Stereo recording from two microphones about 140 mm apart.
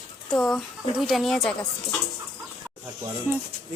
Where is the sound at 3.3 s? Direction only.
20° right (ahead or behind).